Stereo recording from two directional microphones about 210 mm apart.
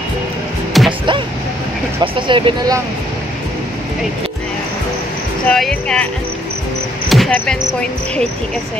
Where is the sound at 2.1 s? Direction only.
25° right (ahead or behind).